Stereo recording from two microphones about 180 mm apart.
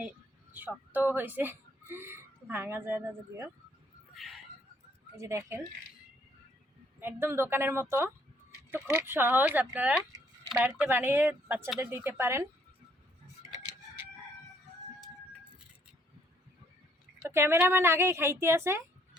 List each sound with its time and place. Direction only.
0.5 s speech: 10° right (ahead or behind)
4.1 s a sound: centre (ahead or behind)
5.1 s speech: 15° right (ahead or behind)
7.0 s speech: 10° right (ahead or behind)
17.2 s speech: 15° right (ahead or behind)